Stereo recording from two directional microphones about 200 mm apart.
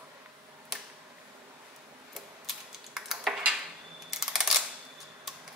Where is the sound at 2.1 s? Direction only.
Centre (ahead or behind).